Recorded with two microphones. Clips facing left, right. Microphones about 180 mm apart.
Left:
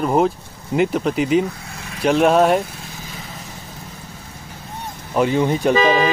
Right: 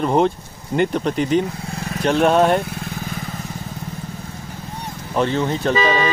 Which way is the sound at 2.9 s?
55° right (ahead or behind).